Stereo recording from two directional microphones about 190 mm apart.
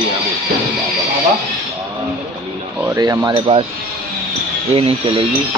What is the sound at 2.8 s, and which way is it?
Cutlery, 15° right (ahead or behind).